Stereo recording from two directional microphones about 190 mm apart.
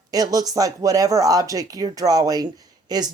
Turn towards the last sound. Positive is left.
turn(degrees=-20)  # may be behind; listen again after turning